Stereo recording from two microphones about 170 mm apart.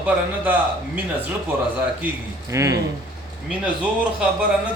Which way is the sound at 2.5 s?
20° right (ahead or behind).